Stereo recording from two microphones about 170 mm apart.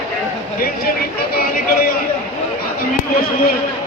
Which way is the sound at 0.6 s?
60° left (ahead or behind).